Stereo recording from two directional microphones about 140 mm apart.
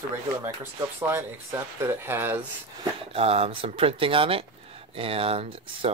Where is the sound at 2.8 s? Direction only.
45° right (ahead or behind).